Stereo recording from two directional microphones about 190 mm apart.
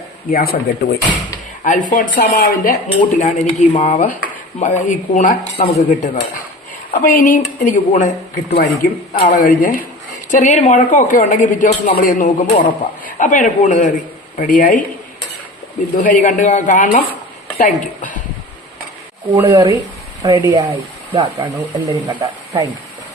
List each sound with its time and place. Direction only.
0.3 s speech: 50° left (ahead or behind); by 6.2 s 35° left (ahead or behind)
7.0 s speech: 45° left (ahead or behind)
16.0 s speech: 45° left (ahead or behind)
19.3 s speech: 20° right (ahead or behind)
20.7 s speech: 30° right (ahead or behind)